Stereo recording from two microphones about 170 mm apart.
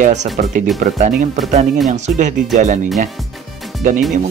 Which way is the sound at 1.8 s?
45° right (ahead or behind).